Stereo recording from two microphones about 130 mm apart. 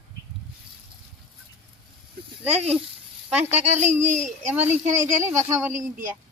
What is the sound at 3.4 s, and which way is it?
Speech, 55° right (ahead or behind).